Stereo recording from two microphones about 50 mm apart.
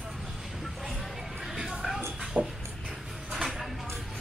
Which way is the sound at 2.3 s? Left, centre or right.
Right.